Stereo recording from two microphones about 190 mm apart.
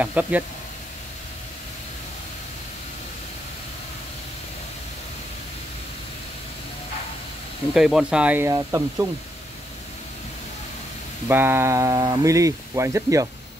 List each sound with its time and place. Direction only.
0.0 s speech: 10° right (ahead or behind)
7.7 s speech: centre (ahead or behind)
11.2 s speech: 10° right (ahead or behind)